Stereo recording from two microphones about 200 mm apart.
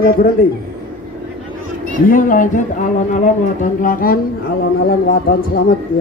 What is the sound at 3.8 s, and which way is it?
Speech, 45° left (ahead or behind).